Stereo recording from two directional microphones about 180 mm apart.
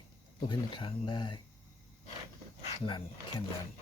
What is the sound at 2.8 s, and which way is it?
Speech, 25° left (ahead or behind).